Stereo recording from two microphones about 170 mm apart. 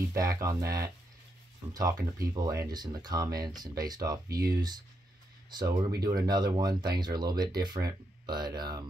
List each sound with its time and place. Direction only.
0.1 s speech: 20° right (ahead or behind)
5.5 s speech: 25° right (ahead or behind)